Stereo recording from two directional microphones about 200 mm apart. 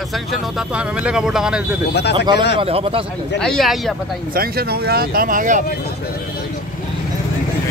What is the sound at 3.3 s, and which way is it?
Speech, 5° left (ahead or behind).